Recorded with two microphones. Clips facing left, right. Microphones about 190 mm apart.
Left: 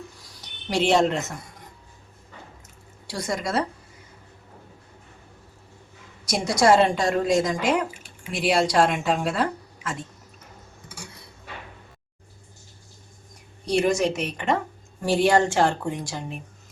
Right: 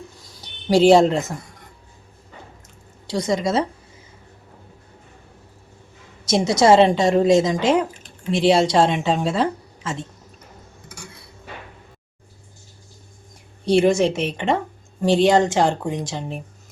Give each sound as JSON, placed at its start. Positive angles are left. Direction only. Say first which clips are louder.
{"t": 0.7, "sound": "speech", "louder": "right 7 dB", "side_deg": -35}
{"t": 3.1, "sound": "speech", "louder": "right 6 dB", "side_deg": -20}
{"t": 6.2, "sound": "speech", "louder": "right 4 dB", "side_deg": -25}
{"t": 7.9, "sound": "drip", "louder": "right 1 dB", "side_deg": 10}
{"t": 8.3, "sound": "speech", "louder": "right 6 dB", "side_deg": -25}
{"t": 13.7, "sound": "speech", "louder": "right 5 dB", "side_deg": -25}